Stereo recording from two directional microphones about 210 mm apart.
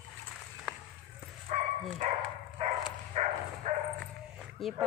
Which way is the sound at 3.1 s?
35° right (ahead or behind).